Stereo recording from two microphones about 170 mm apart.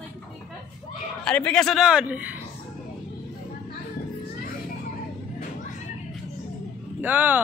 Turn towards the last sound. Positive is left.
turn(degrees=-10)  # may be behind; listen again after turning